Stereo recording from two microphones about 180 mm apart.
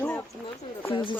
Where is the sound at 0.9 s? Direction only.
25° left (ahead or behind).